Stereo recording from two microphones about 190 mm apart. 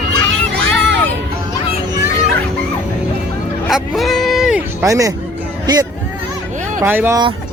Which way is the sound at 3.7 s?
Centre (ahead or behind).